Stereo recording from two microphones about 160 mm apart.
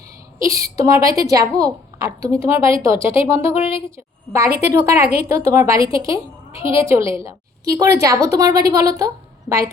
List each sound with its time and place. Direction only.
0.3 s a woman's voice: 20° right (ahead or behind)
3.5 s a woman's voice: 35° left (ahead or behind)
4.6 s a woman's voice: 15° right (ahead or behind)